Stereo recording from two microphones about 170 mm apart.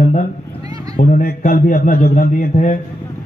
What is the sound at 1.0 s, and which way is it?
A man's voice, 60° left (ahead or behind).